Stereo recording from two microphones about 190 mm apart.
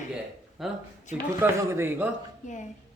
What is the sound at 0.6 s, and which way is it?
Speech, centre (ahead or behind).